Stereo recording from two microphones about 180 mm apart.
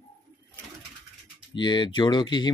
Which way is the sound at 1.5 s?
25° left (ahead or behind).